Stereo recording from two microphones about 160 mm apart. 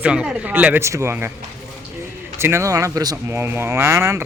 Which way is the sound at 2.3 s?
15° right (ahead or behind).